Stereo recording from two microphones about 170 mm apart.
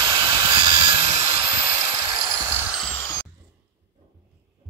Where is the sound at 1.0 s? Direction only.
40° right (ahead or behind).